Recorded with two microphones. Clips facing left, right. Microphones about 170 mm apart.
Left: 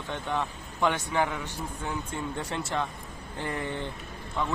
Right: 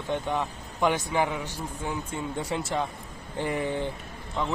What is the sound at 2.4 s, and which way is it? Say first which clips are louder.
Speech: right 3 dB; 10° right (ahead or behind).